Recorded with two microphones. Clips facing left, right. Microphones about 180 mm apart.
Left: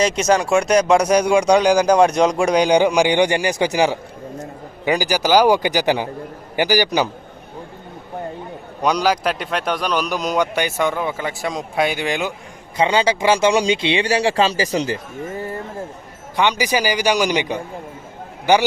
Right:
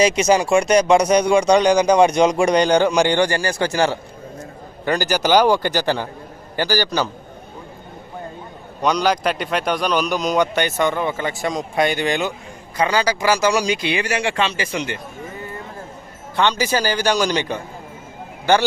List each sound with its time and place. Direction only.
0.2 s a man's voice: 5° right (ahead or behind); by 7.1 s 15° left (ahead or behind)
8.8 s a man's voice: 5° left (ahead or behind)
12.7 s speech: 25° left (ahead or behind)
16.3 s speech: 15° left (ahead or behind)